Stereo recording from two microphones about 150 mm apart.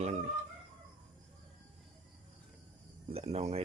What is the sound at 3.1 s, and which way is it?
Speech, 45° right (ahead or behind).